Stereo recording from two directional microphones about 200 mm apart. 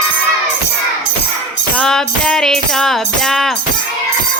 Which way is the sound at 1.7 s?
5° left (ahead or behind).